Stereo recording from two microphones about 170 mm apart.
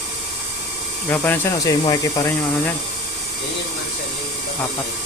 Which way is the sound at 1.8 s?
25° left (ahead or behind).